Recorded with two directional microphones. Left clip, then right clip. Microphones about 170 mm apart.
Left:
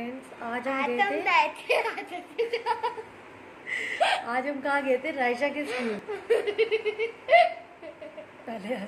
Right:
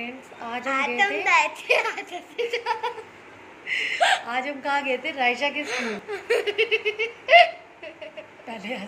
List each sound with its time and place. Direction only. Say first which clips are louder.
0.7 s a child's voice: right 4 dB; 5° right (ahead or behind)
3.6 s a woman's voice: right 4 dB; 25° left (ahead or behind)
5.7 s speech: right 3 dB; 5° right (ahead or behind)
8.5 s a woman's voice: right 1 dB; 25° left (ahead or behind)